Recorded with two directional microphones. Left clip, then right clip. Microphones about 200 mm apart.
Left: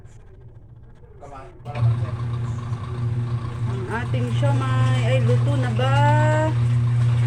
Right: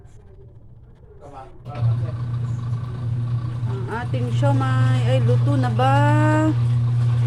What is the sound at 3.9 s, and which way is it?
Speech, 15° right (ahead or behind).